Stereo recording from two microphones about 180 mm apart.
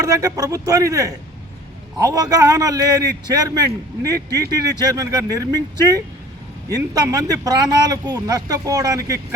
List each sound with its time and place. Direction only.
0.0 s speech: 20° right (ahead or behind)